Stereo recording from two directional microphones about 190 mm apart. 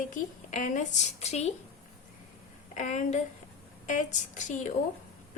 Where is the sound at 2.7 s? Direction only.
40° left (ahead or behind).